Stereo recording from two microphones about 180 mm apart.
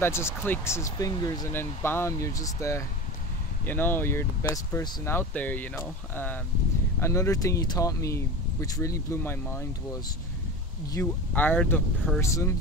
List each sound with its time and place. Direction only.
0.0 s speech: 15° left (ahead or behind)
10.9 s speech: 10° left (ahead or behind)